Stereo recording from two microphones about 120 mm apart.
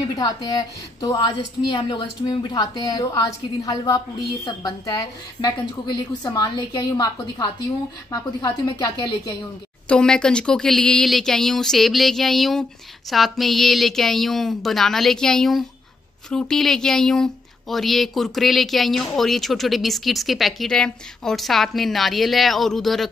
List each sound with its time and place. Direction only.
0.2 s a woman's voice: 35° left (ahead or behind)
1.7 s a woman's voice: 45° left (ahead or behind)
9.8 s speech: 5° left (ahead or behind)